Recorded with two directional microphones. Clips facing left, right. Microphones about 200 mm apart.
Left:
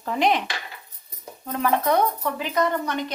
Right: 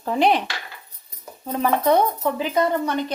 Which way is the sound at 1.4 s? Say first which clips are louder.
Right 2 dB; 25° right (ahead or behind).